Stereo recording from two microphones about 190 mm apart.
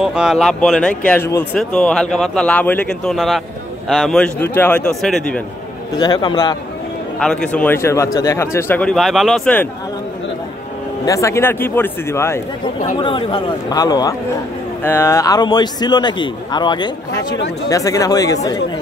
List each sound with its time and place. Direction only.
0.0 s speech: 5° right (ahead or behind)
5.9 s a man's voice: 20° left (ahead or behind)
7.2 s speech: 5° left (ahead or behind)
11.1 s speech: 15° left (ahead or behind)
13.0 s a man's voice: 25° left (ahead or behind)